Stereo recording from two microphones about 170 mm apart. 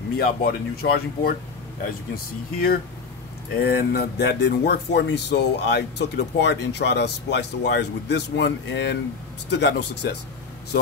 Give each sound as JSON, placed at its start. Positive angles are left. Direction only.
{"t": 0.2, "sound": "speech", "side_deg": 65}